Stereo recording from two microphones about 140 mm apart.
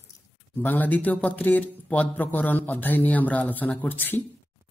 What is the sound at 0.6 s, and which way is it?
Speech, 15° left (ahead or behind).